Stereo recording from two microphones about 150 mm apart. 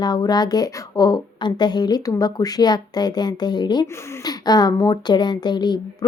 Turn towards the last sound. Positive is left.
turn(degrees=30)  # may be behind; listen again after turning